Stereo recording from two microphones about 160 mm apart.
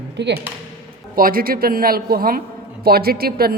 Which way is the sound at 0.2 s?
90° right.